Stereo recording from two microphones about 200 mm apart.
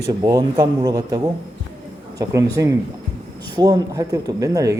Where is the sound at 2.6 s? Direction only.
15° right (ahead or behind).